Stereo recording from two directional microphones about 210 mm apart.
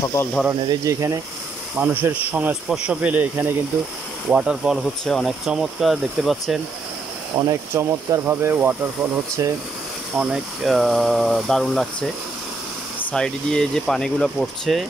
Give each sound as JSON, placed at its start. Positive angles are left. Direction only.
{"t": 0.1, "sound": "speech", "side_deg": 10}
{"t": 0.5, "sound": "a man's voice", "side_deg": -15}
{"t": 7.3, "sound": "a man's voice", "side_deg": -15}
{"t": 10.1, "sound": "speech", "side_deg": -5}
{"t": 13.1, "sound": "speech", "side_deg": 5}